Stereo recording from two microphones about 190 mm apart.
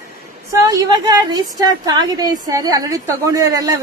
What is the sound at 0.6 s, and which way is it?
A woman's voice, 20° right (ahead or behind).